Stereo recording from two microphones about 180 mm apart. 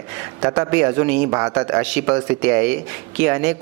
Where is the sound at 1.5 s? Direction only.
5° right (ahead or behind).